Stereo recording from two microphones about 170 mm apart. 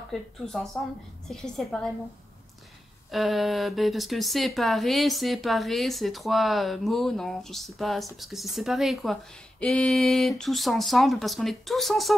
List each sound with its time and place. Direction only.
0.1 s speech: centre (ahead or behind)
3.1 s speech: centre (ahead or behind)